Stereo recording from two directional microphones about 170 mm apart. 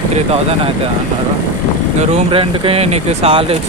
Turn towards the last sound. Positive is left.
turn(degrees=-35)  # may be behind; listen again after turning